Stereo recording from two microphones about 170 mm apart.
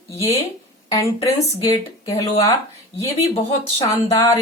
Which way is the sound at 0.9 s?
20° left (ahead or behind).